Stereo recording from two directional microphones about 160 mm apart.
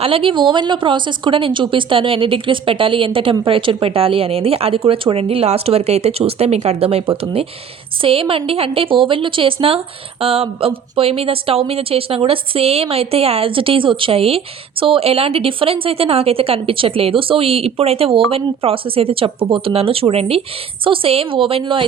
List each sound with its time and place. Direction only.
0.0 s a woman's voice: 35° right (ahead or behind)